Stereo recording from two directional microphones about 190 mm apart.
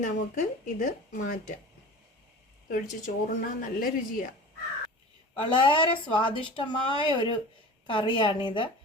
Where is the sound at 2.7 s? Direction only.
45° left (ahead or behind).